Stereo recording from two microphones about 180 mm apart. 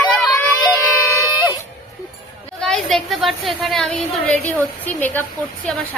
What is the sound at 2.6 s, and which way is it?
A woman's voice, centre (ahead or behind).